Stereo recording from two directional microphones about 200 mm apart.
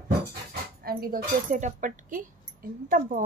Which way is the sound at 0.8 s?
45° right (ahead or behind).